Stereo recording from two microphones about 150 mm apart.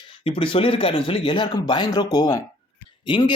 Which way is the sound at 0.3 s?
35° left (ahead or behind).